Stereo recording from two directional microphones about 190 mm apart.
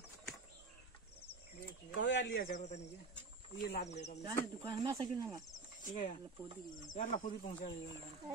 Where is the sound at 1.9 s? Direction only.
70° left (ahead or behind).